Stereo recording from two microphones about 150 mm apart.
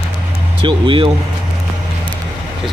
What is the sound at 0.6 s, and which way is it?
Speech, 35° right (ahead or behind).